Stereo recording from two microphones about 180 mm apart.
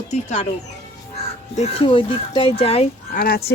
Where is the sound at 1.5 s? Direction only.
35° left (ahead or behind).